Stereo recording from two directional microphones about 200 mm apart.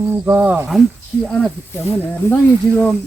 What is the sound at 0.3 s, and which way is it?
Speech, 10° right (ahead or behind).